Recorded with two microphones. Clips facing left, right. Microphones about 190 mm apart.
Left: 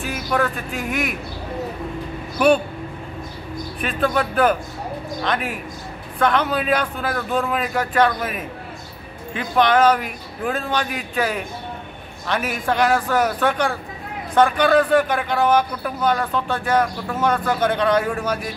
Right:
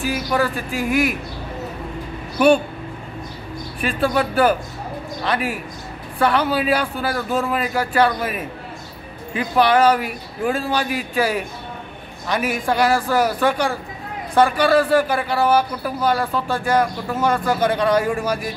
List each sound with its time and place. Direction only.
0.0 s a man's voice: 5° right (ahead or behind)
2.3 s speech: centre (ahead or behind)
3.8 s a man's voice: 5° right (ahead or behind)